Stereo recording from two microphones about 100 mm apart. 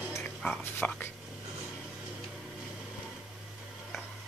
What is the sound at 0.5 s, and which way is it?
Speech, 20° left (ahead or behind).